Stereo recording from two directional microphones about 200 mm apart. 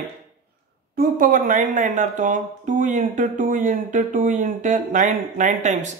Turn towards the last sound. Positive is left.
turn(degrees=-35)  # may be behind; listen again after turning